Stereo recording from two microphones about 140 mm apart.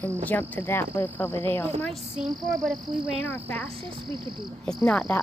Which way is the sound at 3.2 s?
15° left (ahead or behind).